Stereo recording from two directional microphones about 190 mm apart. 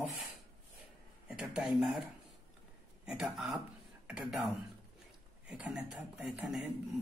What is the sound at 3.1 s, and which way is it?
Speech, centre (ahead or behind).